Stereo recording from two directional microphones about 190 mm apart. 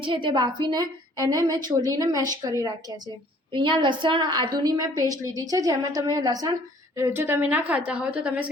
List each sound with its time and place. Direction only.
0.0 s a woman's voice: 25° right (ahead or behind); by 8.4 s 5° right (ahead or behind)